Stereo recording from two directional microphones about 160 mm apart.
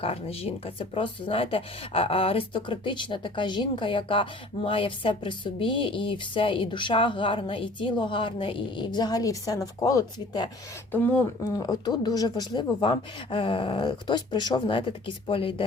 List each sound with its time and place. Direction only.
0.0 s speech: 40° left (ahead or behind)
11.5 s speech: 25° left (ahead or behind)